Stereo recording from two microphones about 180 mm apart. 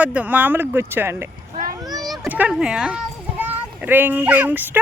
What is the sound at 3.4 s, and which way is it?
A child's voice, 10° right (ahead or behind).